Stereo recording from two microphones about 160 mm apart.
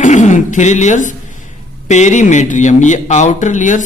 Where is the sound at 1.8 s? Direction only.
45° left (ahead or behind).